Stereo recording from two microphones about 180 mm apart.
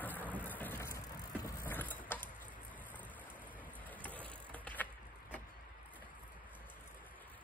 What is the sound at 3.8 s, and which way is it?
Vehicle, 10° left (ahead or behind).